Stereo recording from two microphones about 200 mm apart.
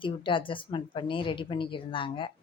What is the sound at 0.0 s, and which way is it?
Speech, 25° left (ahead or behind).